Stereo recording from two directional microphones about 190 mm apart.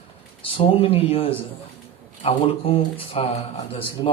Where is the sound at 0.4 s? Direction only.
30° left (ahead or behind).